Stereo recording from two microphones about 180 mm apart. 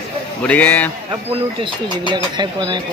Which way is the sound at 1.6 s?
25° right (ahead or behind).